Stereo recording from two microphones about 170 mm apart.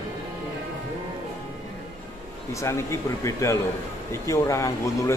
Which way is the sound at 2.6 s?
15° left (ahead or behind).